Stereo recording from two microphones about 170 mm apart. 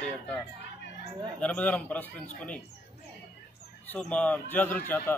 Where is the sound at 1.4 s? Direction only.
10° left (ahead or behind).